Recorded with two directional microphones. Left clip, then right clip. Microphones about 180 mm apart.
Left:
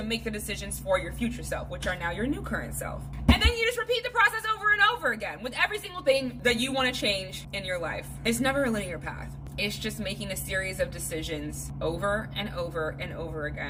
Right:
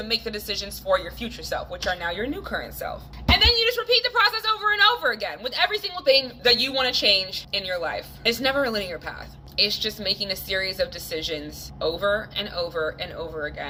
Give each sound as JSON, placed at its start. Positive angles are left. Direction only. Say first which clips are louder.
{"t": 0.1, "sound": "a woman's voice", "louder": "right 7 dB", "side_deg": 20}